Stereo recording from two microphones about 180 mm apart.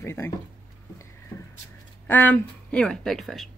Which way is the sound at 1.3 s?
10° left (ahead or behind).